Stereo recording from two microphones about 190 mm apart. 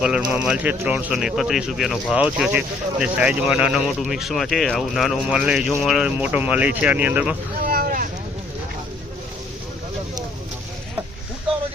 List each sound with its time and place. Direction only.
0.0 s speech: 5° right (ahead or behind)
7.6 s boat: 50° right (ahead or behind)